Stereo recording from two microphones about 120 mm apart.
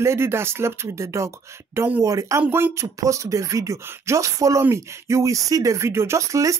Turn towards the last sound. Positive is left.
turn(degrees=-25)  # may be behind; listen again after turning